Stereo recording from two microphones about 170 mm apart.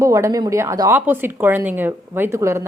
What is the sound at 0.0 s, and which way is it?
A woman's voice, 20° right (ahead or behind).